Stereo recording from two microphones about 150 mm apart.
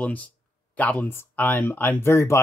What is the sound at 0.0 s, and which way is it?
Speech, 10° left (ahead or behind).